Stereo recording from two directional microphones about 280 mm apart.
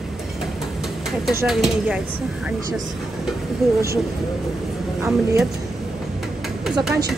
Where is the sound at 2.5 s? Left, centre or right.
Centre.